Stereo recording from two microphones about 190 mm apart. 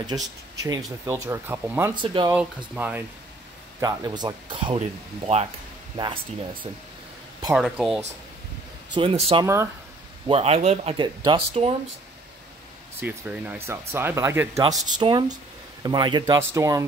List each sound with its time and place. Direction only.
0.0 s speech: 20° right (ahead or behind)
2.0 s speech: 25° right (ahead or behind)
2.3 s speech: 5° right (ahead or behind)
3.8 s speech: 20° right (ahead or behind)
7.5 s speech: centre (ahead or behind)
8.9 s speech: 30° right (ahead or behind)
10.2 s speech: 30° right (ahead or behind)
13.0 s speech: 10° right (ahead or behind)
14.9 s speech: 25° right (ahead or behind)